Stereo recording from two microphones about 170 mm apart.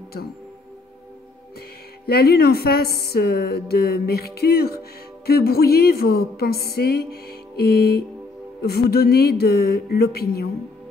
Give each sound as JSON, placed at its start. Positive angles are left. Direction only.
{"t": 2.0, "sound": "a woman's voice", "side_deg": 65}